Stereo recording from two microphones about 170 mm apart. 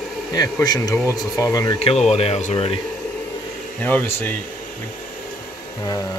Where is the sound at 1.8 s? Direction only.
40° left (ahead or behind).